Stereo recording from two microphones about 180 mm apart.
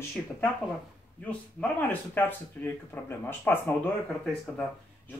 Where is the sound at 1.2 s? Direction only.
10° left (ahead or behind).